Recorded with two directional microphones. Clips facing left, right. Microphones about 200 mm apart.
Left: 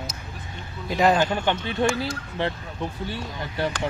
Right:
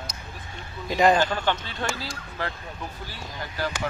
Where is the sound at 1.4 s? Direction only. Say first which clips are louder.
Left 5 dB; 20° left (ahead or behind).